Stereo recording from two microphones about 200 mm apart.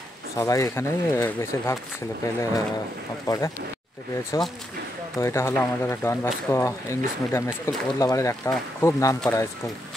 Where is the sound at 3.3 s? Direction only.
20° left (ahead or behind).